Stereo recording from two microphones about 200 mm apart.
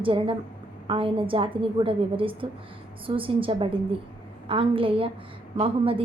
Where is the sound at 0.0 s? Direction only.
25° right (ahead or behind).